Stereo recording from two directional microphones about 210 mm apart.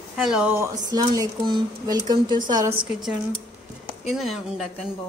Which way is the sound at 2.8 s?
5° right (ahead or behind).